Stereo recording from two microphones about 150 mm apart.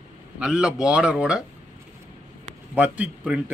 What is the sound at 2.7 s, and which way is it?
Speech, 10° right (ahead or behind).